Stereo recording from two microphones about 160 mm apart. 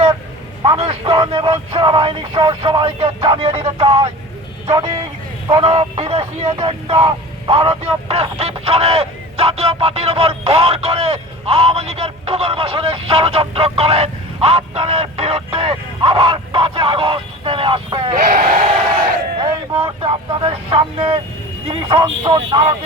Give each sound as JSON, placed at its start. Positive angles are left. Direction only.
{"t": 0.6, "sound": "speech", "side_deg": -30}
{"t": 5.5, "sound": "speech", "side_deg": -35}
{"t": 18.2, "sound": "speech", "side_deg": -60}
{"t": 19.8, "sound": "speech", "side_deg": -35}